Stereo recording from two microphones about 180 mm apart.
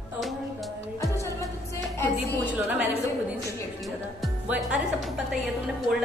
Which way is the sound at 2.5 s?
10° right (ahead or behind).